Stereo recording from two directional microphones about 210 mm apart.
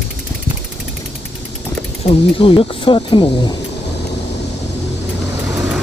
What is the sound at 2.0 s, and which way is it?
Speech, 25° left (ahead or behind).